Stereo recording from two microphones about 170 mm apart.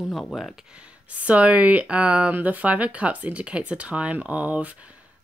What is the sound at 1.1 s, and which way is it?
Speech, 10° right (ahead or behind).